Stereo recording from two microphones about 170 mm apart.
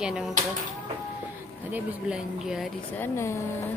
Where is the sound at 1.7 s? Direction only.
5° right (ahead or behind).